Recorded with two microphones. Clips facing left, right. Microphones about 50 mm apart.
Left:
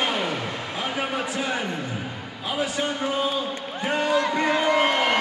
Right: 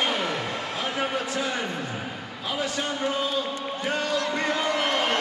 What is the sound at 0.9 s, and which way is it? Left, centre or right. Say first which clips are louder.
Speech: even; centre.